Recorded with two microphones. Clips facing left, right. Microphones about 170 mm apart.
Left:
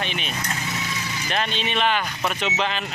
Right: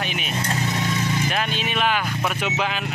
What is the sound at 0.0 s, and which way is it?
Speech, 5° right (ahead or behind).